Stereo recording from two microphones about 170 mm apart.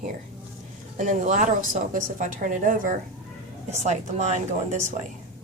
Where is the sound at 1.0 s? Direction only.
45° right (ahead or behind).